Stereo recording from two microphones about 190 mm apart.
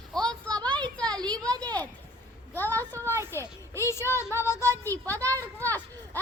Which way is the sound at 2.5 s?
10° left (ahead or behind).